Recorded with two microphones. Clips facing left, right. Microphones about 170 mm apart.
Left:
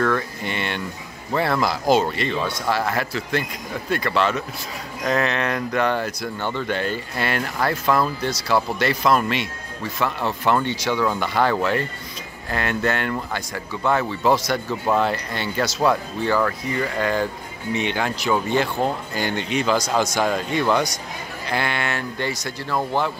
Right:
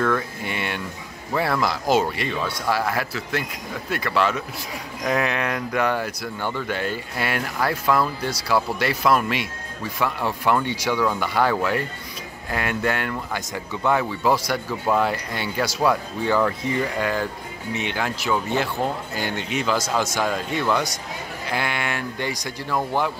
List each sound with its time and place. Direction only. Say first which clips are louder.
0.0 s speech: left 1 dB; 5° right (ahead or behind)
17.0 s speech: left 2 dB; 5° right (ahead or behind)